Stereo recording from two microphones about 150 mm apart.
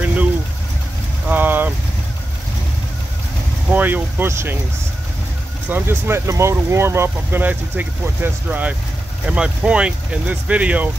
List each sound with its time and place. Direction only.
0.0 s vehicle: 10° right (ahead or behind)
1.3 s vehicle: 10° right (ahead or behind)
3.7 s vehicle: 10° right (ahead or behind)
5.7 s speech: 15° right (ahead or behind)